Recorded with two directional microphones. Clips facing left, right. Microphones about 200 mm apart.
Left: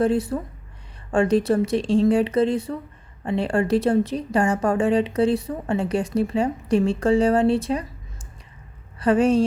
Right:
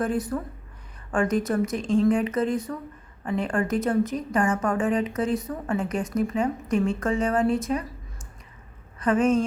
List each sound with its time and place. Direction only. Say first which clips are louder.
0.0 s a woman's voice: left 5 dB; 30° left (ahead or behind)
9.0 s speech: left 3 dB; 35° left (ahead or behind)